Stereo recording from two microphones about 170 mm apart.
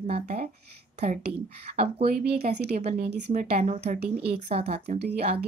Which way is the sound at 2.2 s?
65° right (ahead or behind).